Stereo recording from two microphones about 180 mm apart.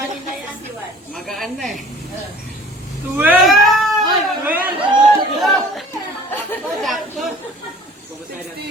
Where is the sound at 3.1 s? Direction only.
10° right (ahead or behind).